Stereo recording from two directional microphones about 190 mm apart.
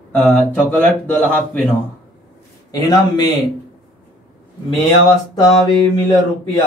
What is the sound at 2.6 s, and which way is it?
Speech, 20° left (ahead or behind).